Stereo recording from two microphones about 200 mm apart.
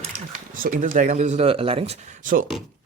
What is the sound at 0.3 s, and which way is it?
Speech, 45° right (ahead or behind).